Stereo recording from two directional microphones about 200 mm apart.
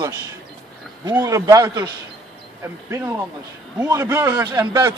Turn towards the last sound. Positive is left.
turn(degrees=-20)  # may be behind; listen again after turning